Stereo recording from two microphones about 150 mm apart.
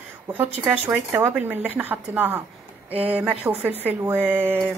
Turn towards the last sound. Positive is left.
turn(degrees=-10)  # may be behind; listen again after turning